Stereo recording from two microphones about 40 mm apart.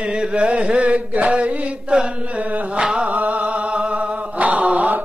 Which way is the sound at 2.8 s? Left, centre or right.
Right.